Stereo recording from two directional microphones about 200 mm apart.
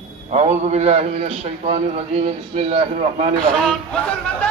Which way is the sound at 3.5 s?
5° left (ahead or behind).